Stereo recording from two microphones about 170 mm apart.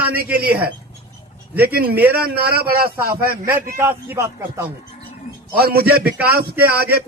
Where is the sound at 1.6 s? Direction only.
65° right (ahead or behind).